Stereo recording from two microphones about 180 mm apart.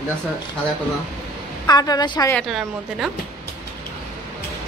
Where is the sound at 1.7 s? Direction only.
20° left (ahead or behind).